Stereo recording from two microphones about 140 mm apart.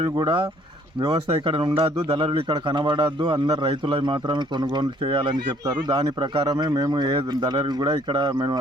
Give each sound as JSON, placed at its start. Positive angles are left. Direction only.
{"t": 0.2, "sound": "a man's voice", "side_deg": -35}